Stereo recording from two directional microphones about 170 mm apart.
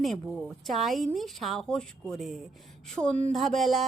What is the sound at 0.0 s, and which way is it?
A woman's voice, centre (ahead or behind).